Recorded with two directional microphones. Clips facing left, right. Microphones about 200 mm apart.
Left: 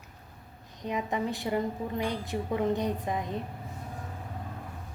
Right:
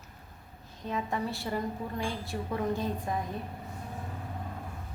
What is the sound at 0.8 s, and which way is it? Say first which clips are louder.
A woman's voice: left 2 dB; 15° left (ahead or behind).